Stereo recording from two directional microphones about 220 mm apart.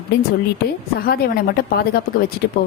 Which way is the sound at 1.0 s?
45° left (ahead or behind).